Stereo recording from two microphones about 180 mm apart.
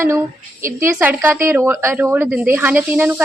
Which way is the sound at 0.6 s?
15° right (ahead or behind).